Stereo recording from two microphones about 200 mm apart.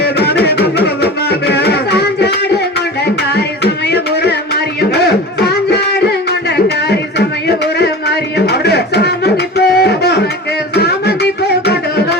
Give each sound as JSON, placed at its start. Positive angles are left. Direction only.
{"t": 0.0, "sound": "a sound", "side_deg": 55}
{"t": 0.8, "sound": "music", "side_deg": 55}
{"t": 3.3, "sound": "music", "side_deg": 55}